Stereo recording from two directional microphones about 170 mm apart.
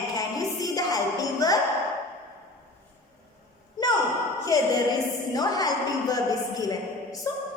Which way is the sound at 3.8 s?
25° left (ahead or behind).